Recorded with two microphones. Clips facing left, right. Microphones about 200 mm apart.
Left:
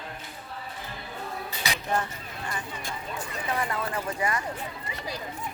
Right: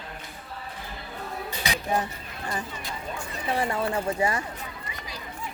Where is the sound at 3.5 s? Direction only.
30° right (ahead or behind).